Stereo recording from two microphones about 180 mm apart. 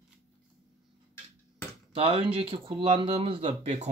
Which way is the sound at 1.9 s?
30° right (ahead or behind).